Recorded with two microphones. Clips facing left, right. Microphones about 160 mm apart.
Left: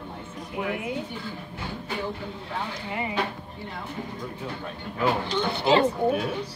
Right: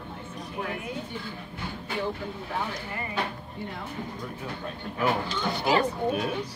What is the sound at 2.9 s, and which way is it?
Speech, 20° left (ahead or behind).